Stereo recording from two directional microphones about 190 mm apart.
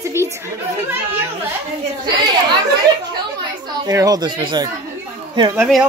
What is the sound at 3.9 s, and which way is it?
Speech, 20° right (ahead or behind).